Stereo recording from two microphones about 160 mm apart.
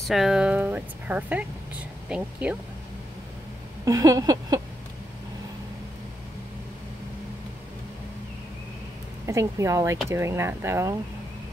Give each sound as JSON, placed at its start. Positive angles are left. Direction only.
{"t": 0.0, "sound": "speech", "side_deg": 0}
{"t": 3.8, "sound": "speech", "side_deg": -20}
{"t": 9.2, "sound": "speech", "side_deg": -20}